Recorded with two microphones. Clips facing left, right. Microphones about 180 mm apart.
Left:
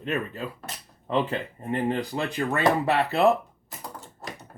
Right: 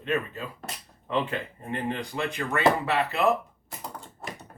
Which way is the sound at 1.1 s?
35° left (ahead or behind).